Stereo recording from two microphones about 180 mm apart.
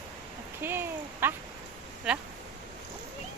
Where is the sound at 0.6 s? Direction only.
15° right (ahead or behind).